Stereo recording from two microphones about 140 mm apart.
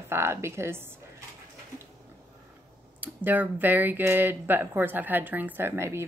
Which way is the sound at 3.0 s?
15° right (ahead or behind).